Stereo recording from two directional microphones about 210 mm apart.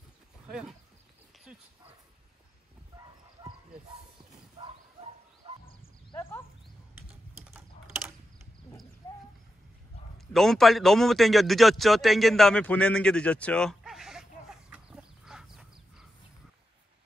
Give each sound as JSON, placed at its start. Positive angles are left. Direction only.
{"t": 0.5, "sound": "speech", "side_deg": 0}
{"t": 1.5, "sound": "dog", "side_deg": -5}
{"t": 5.4, "sound": "bird", "side_deg": -30}
{"t": 6.1, "sound": "a sound", "side_deg": 10}
{"t": 10.1, "sound": "a man's voice", "side_deg": 0}